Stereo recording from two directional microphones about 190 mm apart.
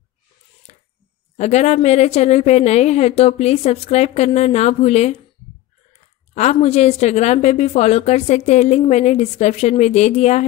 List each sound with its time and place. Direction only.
1.3 s a woman's voice: 35° left (ahead or behind)